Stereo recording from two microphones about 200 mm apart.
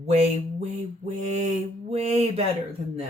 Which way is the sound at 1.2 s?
35° right (ahead or behind).